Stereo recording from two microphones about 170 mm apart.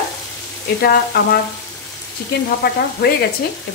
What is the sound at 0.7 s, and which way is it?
Frying, 65° left (ahead or behind).